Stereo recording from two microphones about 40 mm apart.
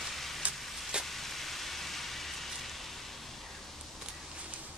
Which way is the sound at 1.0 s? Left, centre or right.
Centre.